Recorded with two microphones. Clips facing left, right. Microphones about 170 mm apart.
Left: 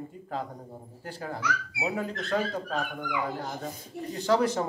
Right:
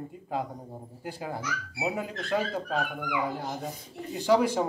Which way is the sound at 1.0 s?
10° right (ahead or behind).